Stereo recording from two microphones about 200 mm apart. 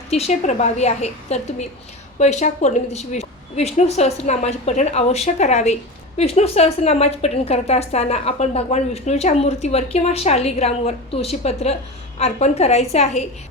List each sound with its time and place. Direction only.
0.1 s a woman's voice: 35° left (ahead or behind)